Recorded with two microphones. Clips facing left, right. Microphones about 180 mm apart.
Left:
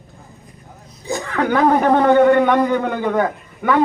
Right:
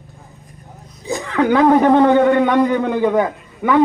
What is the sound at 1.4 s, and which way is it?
A man's voice, 20° right (ahead or behind).